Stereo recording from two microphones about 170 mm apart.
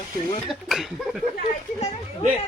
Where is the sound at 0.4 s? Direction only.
Centre (ahead or behind).